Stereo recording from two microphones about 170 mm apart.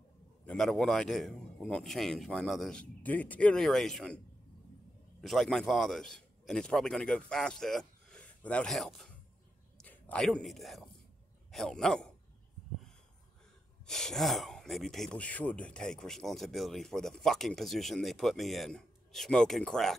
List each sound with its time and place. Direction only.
0.5 s speech: 5° left (ahead or behind)
5.2 s a man's voice: centre (ahead or behind)
13.8 s speech: 5° left (ahead or behind)